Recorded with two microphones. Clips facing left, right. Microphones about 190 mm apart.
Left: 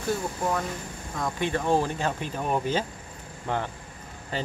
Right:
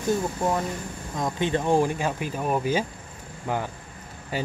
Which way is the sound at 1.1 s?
20° right (ahead or behind).